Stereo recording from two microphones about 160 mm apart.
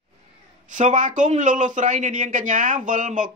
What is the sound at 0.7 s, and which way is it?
A man's voice, 55° right (ahead or behind).